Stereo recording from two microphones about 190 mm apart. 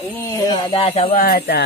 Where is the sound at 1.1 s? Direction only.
50° left (ahead or behind).